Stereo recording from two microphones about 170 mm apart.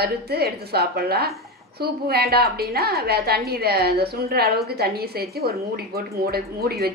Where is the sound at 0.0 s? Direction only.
70° right (ahead or behind).